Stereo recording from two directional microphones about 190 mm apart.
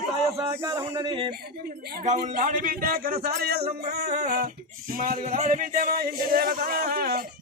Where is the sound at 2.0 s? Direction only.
40° right (ahead or behind).